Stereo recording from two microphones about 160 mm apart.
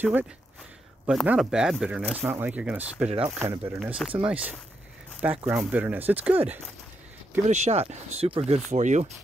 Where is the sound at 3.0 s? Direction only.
40° right (ahead or behind).